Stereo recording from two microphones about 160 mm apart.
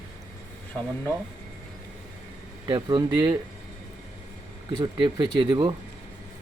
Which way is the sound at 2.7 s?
30° right (ahead or behind).